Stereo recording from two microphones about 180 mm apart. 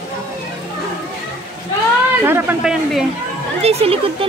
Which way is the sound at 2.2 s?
10° right (ahead or behind).